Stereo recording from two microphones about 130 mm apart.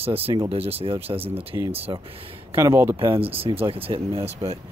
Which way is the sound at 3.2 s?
45° right (ahead or behind).